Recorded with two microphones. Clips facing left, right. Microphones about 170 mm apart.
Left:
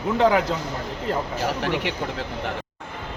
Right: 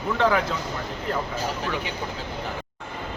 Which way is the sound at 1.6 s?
80° left.